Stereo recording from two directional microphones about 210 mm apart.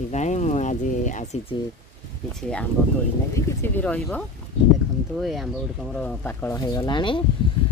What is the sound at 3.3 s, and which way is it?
Speech, 10° left (ahead or behind).